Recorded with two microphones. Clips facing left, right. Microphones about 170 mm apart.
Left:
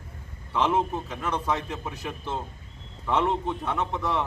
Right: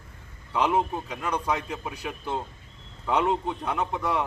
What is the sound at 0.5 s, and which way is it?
A man's voice, 5° right (ahead or behind).